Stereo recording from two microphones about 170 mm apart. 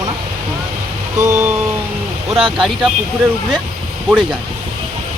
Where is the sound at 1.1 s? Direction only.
15° right (ahead or behind).